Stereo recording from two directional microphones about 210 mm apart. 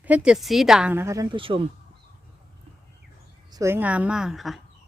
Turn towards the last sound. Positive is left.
turn(degrees=0)  # may be behind; listen again after turning